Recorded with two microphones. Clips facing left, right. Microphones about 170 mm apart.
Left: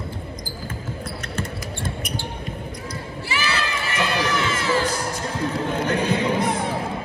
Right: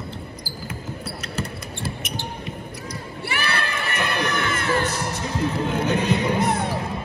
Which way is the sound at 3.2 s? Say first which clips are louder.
Even; 55° right (ahead or behind).